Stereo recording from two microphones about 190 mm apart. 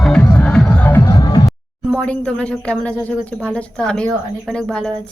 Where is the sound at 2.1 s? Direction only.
5° left (ahead or behind).